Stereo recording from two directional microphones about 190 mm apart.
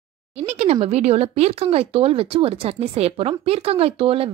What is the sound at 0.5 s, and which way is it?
Speech, 35° right (ahead or behind).